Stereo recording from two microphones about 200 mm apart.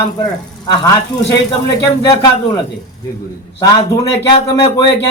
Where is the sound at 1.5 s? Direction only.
25° left (ahead or behind).